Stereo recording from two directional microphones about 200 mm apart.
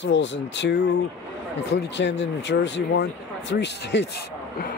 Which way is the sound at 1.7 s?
60° left (ahead or behind).